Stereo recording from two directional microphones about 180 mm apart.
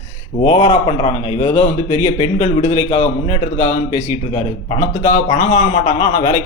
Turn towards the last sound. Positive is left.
turn(degrees=35)  # may be behind; listen again after turning